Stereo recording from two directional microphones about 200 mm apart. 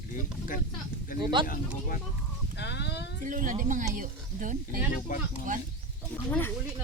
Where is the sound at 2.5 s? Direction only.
60° left (ahead or behind).